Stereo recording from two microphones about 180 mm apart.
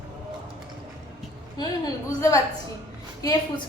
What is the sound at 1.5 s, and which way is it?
A woman's voice, 20° left (ahead or behind).